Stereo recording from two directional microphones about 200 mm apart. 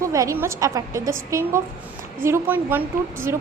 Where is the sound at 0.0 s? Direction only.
15° right (ahead or behind).